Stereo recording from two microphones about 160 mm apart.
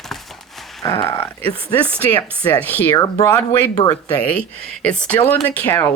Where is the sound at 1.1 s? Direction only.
10° left (ahead or behind).